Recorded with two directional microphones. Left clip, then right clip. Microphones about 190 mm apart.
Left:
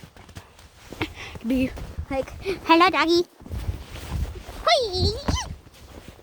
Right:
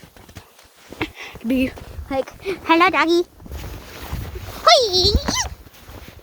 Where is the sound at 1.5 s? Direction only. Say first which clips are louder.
Right 4 dB; 40° right (ahead or behind).